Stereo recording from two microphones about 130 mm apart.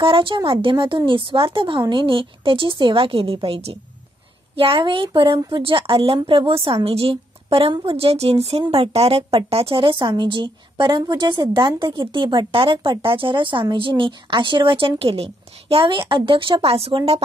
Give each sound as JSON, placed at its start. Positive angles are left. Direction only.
{"t": 0.0, "sound": "a woman's voice", "side_deg": -40}